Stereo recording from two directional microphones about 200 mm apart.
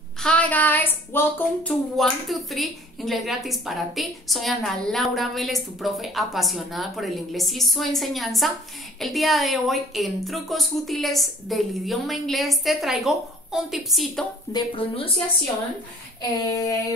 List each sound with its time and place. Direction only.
0.2 s speech: 5° left (ahead or behind)
14.5 s speech: 25° left (ahead or behind)
16.2 s speech: 20° left (ahead or behind)